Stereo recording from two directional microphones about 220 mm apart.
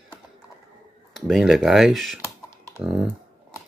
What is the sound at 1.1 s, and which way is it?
Speech, centre (ahead or behind).